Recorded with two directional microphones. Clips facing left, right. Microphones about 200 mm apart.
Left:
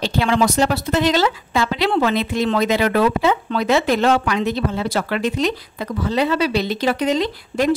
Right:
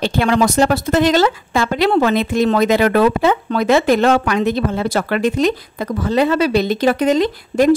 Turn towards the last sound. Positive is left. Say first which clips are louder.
# right 5 dB
turn(degrees=-45)  # may be behind; listen again after turning